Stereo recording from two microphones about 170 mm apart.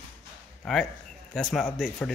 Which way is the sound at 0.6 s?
Centre (ahead or behind).